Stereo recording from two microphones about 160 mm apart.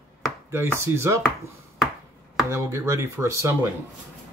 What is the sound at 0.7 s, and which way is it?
Speech, 15° right (ahead or behind).